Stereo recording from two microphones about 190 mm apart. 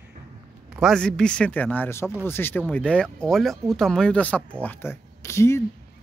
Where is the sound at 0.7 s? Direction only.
Centre (ahead or behind).